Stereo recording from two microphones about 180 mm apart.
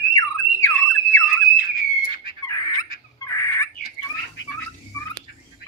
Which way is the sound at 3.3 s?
15° left (ahead or behind).